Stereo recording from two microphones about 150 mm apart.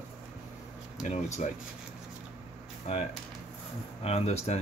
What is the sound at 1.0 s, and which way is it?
Speech, 50° left (ahead or behind).